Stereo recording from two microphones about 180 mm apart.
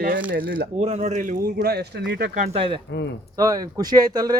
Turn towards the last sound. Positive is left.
turn(degrees=-20)  # may be behind; listen again after turning